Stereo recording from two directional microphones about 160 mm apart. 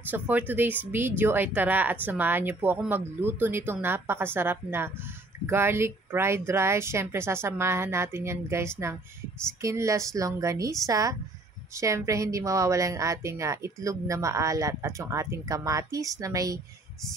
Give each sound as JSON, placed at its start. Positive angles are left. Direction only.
{"t": 0.0, "sound": "a woman's voice", "side_deg": -10}